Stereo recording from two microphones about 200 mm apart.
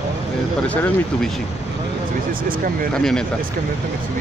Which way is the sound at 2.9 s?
5° left (ahead or behind).